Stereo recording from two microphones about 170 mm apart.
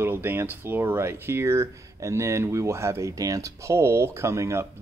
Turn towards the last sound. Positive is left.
turn(degrees=-15)  # may be behind; listen again after turning